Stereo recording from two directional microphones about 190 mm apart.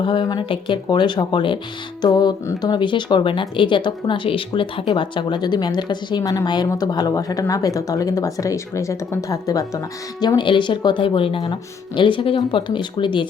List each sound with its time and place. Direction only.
0.0 s speech: 25° left (ahead or behind)